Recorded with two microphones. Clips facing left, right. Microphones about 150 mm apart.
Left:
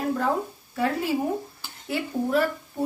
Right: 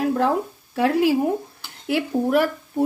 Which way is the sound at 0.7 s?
80° right.